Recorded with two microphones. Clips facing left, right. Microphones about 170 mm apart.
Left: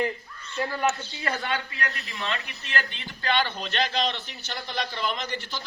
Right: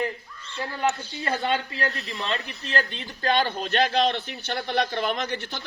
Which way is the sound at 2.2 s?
30° right (ahead or behind).